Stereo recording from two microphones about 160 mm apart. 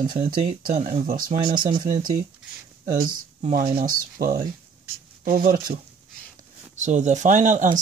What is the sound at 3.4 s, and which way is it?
Speech, 55° right (ahead or behind).